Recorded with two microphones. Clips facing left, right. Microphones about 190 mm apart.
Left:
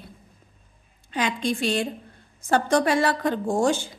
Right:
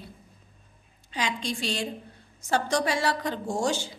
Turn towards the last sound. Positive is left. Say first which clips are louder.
# left 5 dB
turn(degrees=55)  # may be behind; listen again after turning